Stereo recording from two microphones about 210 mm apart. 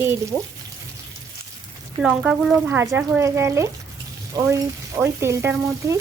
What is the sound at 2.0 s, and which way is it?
Speech, centre (ahead or behind).